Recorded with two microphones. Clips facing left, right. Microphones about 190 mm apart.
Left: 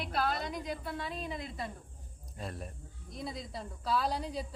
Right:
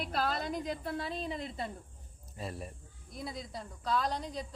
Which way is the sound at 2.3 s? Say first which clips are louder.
Right 1 dB; centre (ahead or behind).